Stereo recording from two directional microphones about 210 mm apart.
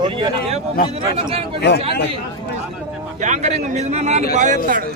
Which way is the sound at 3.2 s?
35° right (ahead or behind).